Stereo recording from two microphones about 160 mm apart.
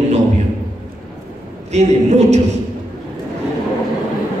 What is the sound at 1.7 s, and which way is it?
Speech, 45° right (ahead or behind).